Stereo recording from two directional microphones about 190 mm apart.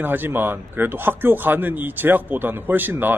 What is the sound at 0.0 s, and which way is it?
Speech, 10° right (ahead or behind).